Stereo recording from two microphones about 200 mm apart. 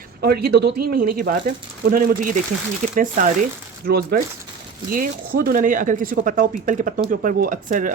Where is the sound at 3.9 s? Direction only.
50° right (ahead or behind).